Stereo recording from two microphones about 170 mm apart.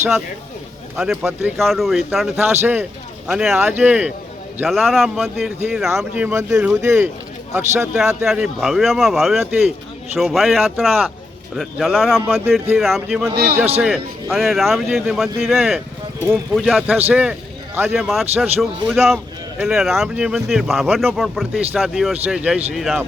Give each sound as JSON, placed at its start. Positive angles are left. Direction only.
{"t": 0.9, "sound": "a man's voice", "side_deg": -5}
{"t": 13.3, "sound": "a man's voice", "side_deg": -65}
{"t": 13.8, "sound": "a man's voice", "side_deg": 0}